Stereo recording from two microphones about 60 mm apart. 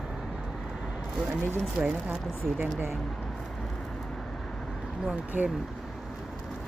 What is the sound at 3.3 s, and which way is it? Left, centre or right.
Vehicle, centre.